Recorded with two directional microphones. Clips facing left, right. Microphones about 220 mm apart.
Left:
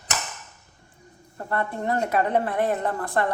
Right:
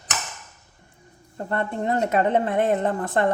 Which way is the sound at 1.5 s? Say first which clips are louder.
Right 2 dB; 20° right (ahead or behind).